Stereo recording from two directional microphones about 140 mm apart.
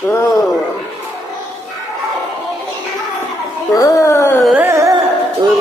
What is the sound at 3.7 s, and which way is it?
Speech, 25° left (ahead or behind).